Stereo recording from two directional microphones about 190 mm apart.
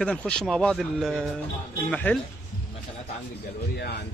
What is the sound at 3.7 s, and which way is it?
Speech, 60° left (ahead or behind).